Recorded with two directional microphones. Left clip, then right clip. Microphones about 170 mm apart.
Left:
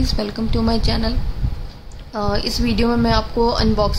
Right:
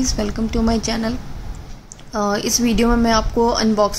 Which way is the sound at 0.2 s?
20° right (ahead or behind).